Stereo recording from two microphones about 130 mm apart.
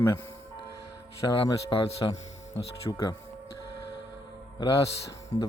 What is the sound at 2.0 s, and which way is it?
Speech, 30° left (ahead or behind).